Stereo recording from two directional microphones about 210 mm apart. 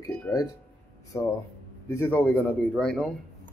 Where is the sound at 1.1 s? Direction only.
15° left (ahead or behind).